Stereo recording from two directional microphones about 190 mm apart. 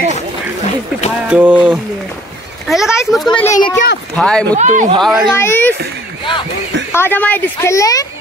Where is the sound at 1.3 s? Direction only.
10° right (ahead or behind).